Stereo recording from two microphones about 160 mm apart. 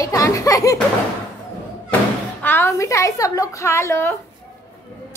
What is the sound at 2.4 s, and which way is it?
A woman's voice, 15° left (ahead or behind).